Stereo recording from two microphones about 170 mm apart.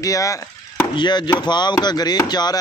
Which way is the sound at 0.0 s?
20° left (ahead or behind).